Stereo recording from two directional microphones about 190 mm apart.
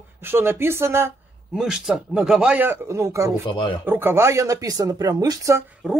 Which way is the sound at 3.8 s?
10° right (ahead or behind).